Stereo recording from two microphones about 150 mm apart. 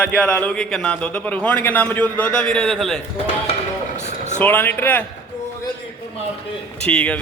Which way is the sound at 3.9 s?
50° left (ahead or behind).